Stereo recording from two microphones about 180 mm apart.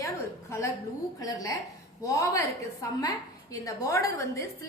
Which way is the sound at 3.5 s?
20° left (ahead or behind).